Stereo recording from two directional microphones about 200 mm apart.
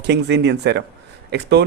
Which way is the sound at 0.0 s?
55° right (ahead or behind).